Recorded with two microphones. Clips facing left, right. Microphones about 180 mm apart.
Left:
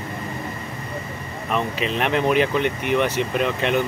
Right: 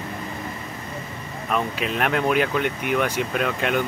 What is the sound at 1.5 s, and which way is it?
Speech, centre (ahead or behind).